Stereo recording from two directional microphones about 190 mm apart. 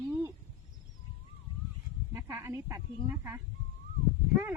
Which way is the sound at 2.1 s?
15° right (ahead or behind).